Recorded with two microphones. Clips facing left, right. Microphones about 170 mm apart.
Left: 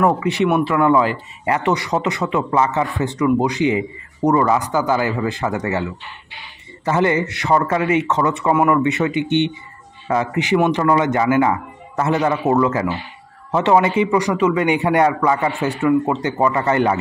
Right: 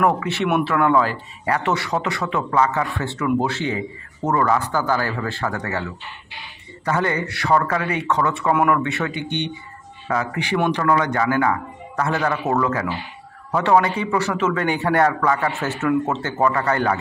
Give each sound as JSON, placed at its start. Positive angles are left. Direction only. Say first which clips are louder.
{"t": 0.0, "sound": "a man's voice", "louder": "left 3 dB", "side_deg": 15}